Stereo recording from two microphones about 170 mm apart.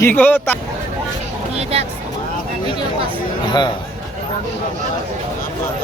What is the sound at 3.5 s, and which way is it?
Speech, 25° left (ahead or behind).